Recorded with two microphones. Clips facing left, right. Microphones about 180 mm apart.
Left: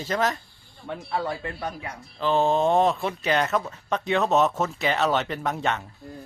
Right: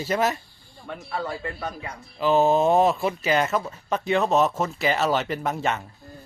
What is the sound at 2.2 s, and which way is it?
Speech, 5° right (ahead or behind).